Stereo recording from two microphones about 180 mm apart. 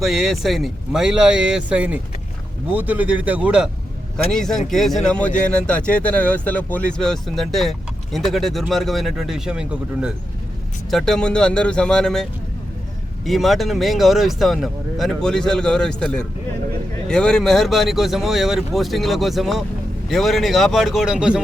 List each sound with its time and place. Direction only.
0.0 s speech: centre (ahead or behind)